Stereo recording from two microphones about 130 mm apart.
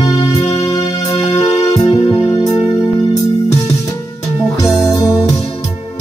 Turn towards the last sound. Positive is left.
turn(degrees=25)  # may be behind; listen again after turning